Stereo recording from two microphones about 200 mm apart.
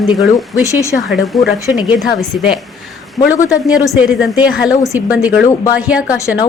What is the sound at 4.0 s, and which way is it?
A woman's voice, 5° right (ahead or behind).